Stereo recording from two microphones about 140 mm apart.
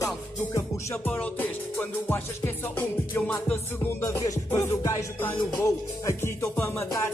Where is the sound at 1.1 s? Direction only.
10° left (ahead or behind).